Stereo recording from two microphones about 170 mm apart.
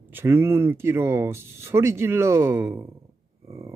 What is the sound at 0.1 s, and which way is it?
Speech, 15° right (ahead or behind).